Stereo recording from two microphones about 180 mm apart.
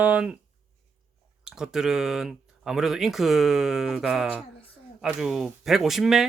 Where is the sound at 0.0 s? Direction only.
5° right (ahead or behind).